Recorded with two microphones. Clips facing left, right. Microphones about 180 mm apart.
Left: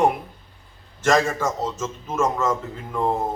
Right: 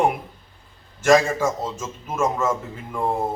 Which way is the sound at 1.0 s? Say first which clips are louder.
Right 3 dB; 10° right (ahead or behind).